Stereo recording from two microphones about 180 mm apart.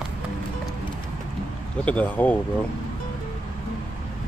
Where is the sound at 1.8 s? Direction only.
10° left (ahead or behind).